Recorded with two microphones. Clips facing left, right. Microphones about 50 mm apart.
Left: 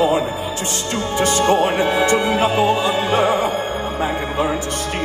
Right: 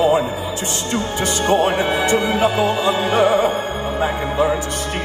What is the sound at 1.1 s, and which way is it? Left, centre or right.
Music, left.